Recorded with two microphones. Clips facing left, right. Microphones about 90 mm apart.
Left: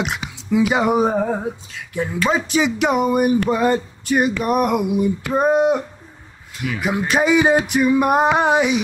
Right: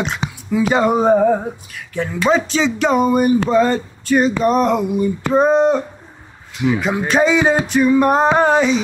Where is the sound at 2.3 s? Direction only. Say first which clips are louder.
Right 1 dB; 15° left (ahead or behind).